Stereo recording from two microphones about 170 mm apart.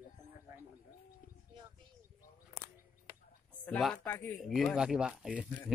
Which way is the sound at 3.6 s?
5° left (ahead or behind).